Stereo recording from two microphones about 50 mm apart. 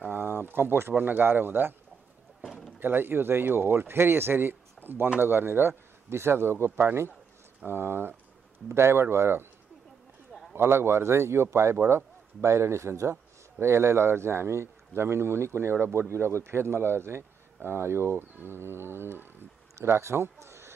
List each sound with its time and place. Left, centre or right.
0.1 s speech: right
2.4 s a sound: centre
2.8 s speech: right
8.6 s speech: right
10.5 s speech: right
15.9 s a man's voice: right